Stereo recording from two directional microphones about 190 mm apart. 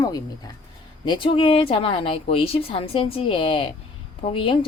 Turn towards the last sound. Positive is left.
turn(degrees=25)  # may be behind; listen again after turning